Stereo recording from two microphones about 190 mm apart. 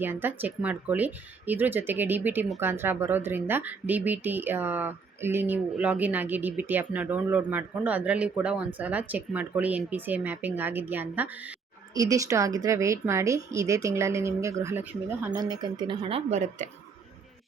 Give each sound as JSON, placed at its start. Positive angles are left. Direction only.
{"t": 0.0, "sound": "speech", "side_deg": -10}
{"t": 15.4, "sound": "speech", "side_deg": -25}